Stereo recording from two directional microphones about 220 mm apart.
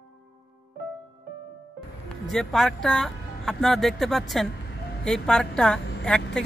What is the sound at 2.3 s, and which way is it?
Speech, centre (ahead or behind).